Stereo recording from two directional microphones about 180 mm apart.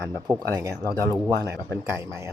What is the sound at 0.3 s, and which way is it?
Speech, 10° right (ahead or behind).